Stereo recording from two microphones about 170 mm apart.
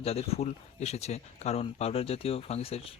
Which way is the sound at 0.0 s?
35° left (ahead or behind).